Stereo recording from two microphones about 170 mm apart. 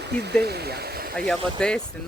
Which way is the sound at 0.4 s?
70° right (ahead or behind).